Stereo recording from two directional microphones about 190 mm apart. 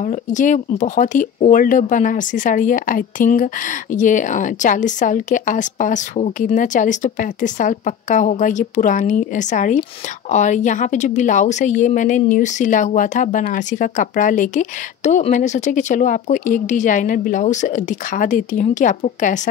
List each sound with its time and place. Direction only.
0.0 s a woman's voice: 40° left (ahead or behind)